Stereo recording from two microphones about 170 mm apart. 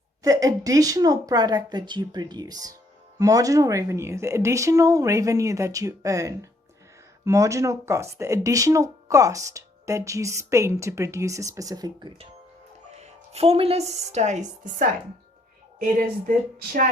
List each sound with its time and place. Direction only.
0.2 s a woman's voice: 20° right (ahead or behind); by 14.8 s 45° right (ahead or behind)
16.0 s speech: 55° right (ahead or behind)